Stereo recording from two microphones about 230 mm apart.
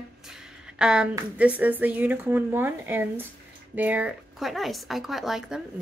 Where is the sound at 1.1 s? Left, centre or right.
Centre.